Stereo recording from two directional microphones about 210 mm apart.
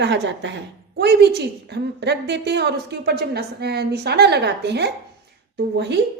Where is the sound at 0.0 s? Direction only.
55° right (ahead or behind).